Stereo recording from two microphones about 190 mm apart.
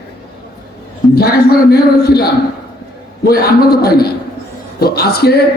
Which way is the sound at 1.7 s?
55° left (ahead or behind).